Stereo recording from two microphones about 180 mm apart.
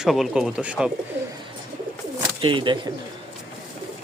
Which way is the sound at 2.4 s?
25° right (ahead or behind).